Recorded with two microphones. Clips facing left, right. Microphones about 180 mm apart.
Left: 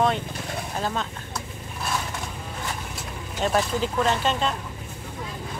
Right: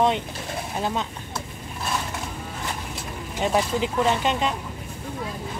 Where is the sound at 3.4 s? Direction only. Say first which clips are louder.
Right 1 dB; 15° right (ahead or behind).